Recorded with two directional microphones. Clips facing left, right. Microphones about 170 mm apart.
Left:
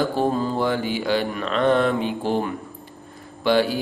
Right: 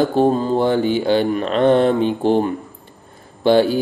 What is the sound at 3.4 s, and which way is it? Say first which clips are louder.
Speech: right 5 dB; 30° right (ahead or behind).